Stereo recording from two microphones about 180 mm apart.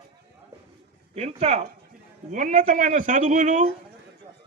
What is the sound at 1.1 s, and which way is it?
A man's voice, 35° right (ahead or behind).